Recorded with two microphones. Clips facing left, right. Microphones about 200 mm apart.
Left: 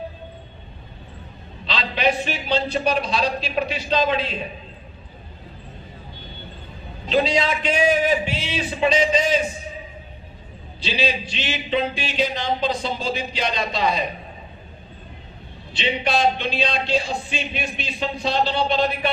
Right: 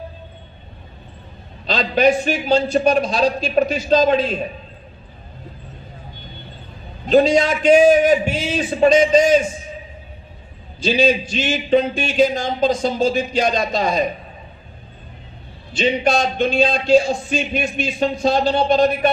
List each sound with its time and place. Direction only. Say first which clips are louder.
1.7 s speech: right 7 dB; 45° right (ahead or behind)
7.1 s speech: right 7 dB; 45° right (ahead or behind)
10.8 s speech: right 8 dB; 45° right (ahead or behind)
15.7 s speech: right 5 dB; 45° right (ahead or behind)